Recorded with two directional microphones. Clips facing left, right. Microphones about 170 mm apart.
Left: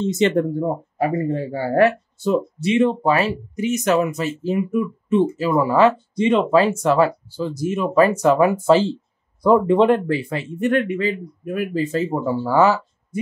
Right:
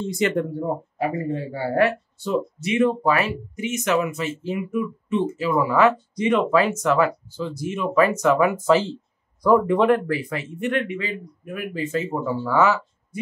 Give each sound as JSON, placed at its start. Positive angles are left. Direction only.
{"t": 0.0, "sound": "speech", "side_deg": 25}
{"t": 1.3, "sound": "speech", "side_deg": 45}
{"t": 2.6, "sound": "speech", "side_deg": 25}
{"t": 10.6, "sound": "speech", "side_deg": 45}